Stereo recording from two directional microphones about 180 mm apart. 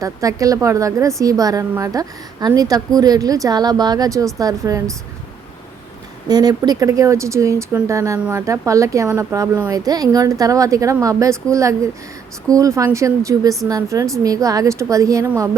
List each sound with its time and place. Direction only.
0.0 s a woman's voice: 20° right (ahead or behind)
6.2 s a woman's voice: 20° right (ahead or behind)